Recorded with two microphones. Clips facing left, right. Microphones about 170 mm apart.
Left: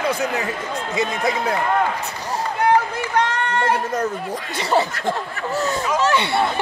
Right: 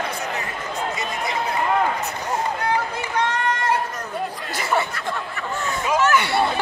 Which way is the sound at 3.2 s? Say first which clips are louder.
Left 2 dB; 60° left (ahead or behind).